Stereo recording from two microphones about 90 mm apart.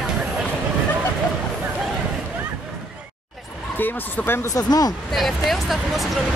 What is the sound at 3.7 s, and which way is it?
Speech, 20° left (ahead or behind).